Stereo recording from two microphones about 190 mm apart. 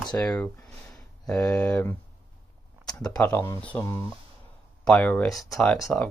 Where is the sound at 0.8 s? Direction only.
5° left (ahead or behind).